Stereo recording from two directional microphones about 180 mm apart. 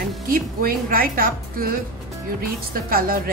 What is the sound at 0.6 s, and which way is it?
A woman's voice, 55° right (ahead or behind).